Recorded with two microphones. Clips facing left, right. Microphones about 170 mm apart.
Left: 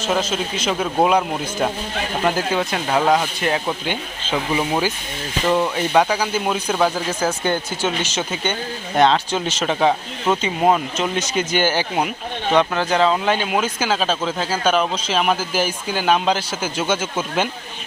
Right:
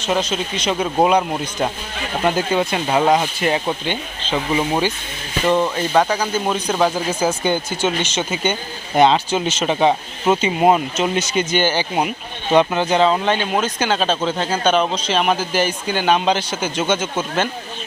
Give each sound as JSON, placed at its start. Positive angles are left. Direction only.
{"t": 0.0, "sound": "speech", "side_deg": 5}
{"t": 6.0, "sound": "speech", "side_deg": 10}
{"t": 11.3, "sound": "speech", "side_deg": 5}
{"t": 12.5, "sound": "speech", "side_deg": -20}
{"t": 12.9, "sound": "speech", "side_deg": 0}